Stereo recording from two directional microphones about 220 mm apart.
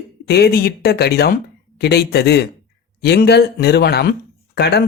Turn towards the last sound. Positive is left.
turn(degrees=45)  # may be behind; listen again after turning